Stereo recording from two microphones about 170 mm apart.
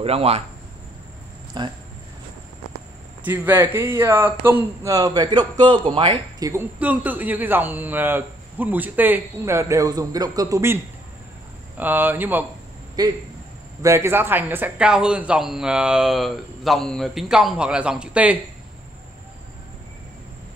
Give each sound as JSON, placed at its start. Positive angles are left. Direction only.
{"t": 0.0, "sound": "speech", "side_deg": -35}
{"t": 1.5, "sound": "speech", "side_deg": -25}
{"t": 3.3, "sound": "a man's voice", "side_deg": -10}
{"t": 6.5, "sound": "a man's voice", "side_deg": -10}
{"t": 11.8, "sound": "a man's voice", "side_deg": -10}
{"t": 13.0, "sound": "speech", "side_deg": -25}